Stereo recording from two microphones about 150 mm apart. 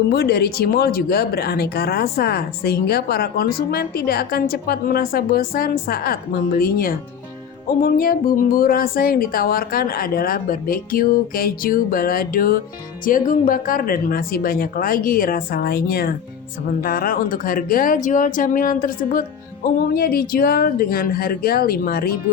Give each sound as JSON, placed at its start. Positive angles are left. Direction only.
{"t": 0.1, "sound": "speech", "side_deg": 90}
{"t": 6.6, "sound": "speech", "side_deg": 75}
{"t": 13.1, "sound": "speech", "side_deg": 65}
{"t": 16.8, "sound": "speech", "side_deg": 75}